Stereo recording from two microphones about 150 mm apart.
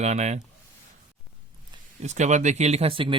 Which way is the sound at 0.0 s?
50° right (ahead or behind).